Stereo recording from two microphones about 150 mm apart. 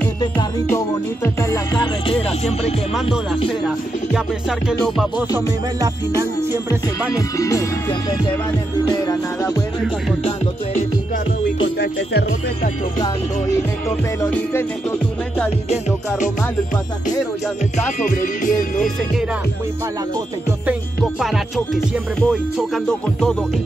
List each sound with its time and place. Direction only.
0.2 s music: 30° left (ahead or behind); by 2.7 s 45° left (ahead or behind)
2.9 s music: 5° right (ahead or behind)
5.1 s music: 25° left (ahead or behind)
5.8 s music: 20° right (ahead or behind)
7.2 s music: 20° left (ahead or behind)
8.8 s music: 30° left (ahead or behind)
10.2 s music: 50° left (ahead or behind)
11.8 s speech: 90° left
13.6 s music: 15° left (ahead or behind)
17.7 s speech: 55° left (ahead or behind)
21.9 s music: 5° right (ahead or behind)